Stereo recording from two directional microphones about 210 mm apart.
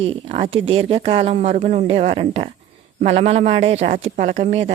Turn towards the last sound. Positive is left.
turn(degrees=-40)  # may be behind; listen again after turning